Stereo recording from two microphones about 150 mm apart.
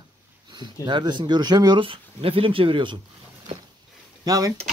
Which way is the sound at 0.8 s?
30° right (ahead or behind).